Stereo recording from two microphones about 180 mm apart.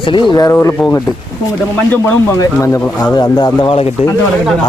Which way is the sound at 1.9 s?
15° left (ahead or behind).